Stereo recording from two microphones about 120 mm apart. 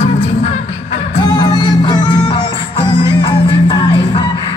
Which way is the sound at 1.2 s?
35° left (ahead or behind).